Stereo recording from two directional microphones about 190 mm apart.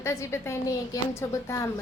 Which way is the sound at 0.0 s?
15° left (ahead or behind).